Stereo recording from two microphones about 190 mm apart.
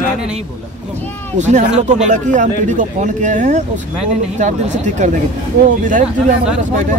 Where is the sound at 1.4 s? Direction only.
40° right (ahead or behind).